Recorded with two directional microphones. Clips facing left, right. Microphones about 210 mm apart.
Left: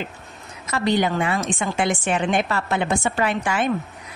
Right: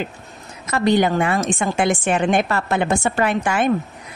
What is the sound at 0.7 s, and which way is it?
A woman's voice, 50° right (ahead or behind).